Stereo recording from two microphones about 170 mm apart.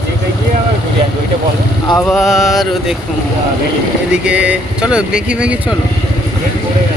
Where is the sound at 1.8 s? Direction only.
20° left (ahead or behind).